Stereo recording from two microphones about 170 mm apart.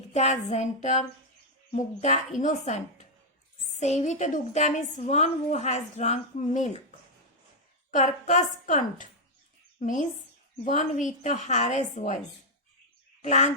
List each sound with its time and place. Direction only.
0.1 s a woman's voice: 40° left (ahead or behind)
3.8 s a woman's voice: 40° left (ahead or behind)
7.9 s a woman's voice: 45° left (ahead or behind)
10.6 s a woman's voice: 45° left (ahead or behind)
13.2 s speech: 40° left (ahead or behind)